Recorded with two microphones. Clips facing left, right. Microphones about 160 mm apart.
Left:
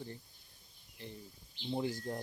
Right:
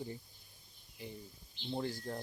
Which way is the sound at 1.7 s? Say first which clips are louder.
Left 2 dB; 10° left (ahead or behind).